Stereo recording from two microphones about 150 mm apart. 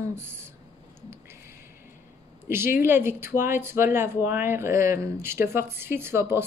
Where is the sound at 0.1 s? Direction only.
15° right (ahead or behind).